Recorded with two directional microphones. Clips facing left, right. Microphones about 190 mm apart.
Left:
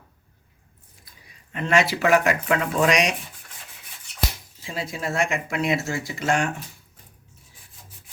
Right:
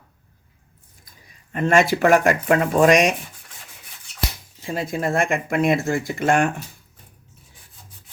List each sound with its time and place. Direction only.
1.5 s speech: 45° right (ahead or behind)
4.6 s speech: 50° right (ahead or behind)